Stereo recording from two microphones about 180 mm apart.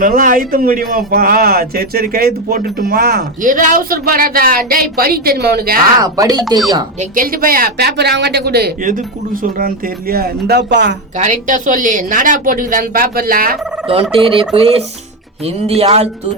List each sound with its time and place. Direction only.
0.0 s a man's voice: 50° right (ahead or behind)
6.0 s speech: 20° right (ahead or behind)
7.0 s a man's voice: 50° right (ahead or behind); by 10.9 s 70° right (ahead or behind)
11.2 s a woman's voice: 45° right (ahead or behind)
13.8 s fowl: 30° right (ahead or behind)